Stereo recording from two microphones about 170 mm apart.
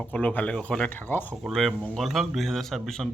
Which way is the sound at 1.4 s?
Centre (ahead or behind).